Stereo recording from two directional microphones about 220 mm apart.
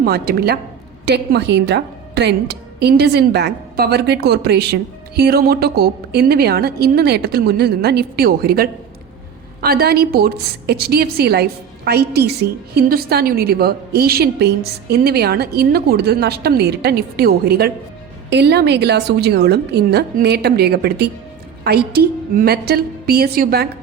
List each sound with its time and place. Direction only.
0.0 s a woman's voice: 45° right (ahead or behind)